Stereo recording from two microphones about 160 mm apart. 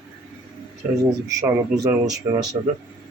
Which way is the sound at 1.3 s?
20° right (ahead or behind).